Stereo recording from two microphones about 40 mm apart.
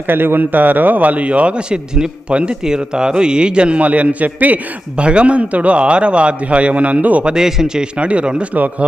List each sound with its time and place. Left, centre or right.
0.1 s a man's voice: right
4.9 s a man's voice: right
7.3 s a man's voice: centre
7.9 s a man's voice: right